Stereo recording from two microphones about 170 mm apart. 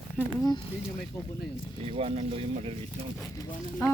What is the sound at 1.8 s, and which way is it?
Speech, 35° right (ahead or behind).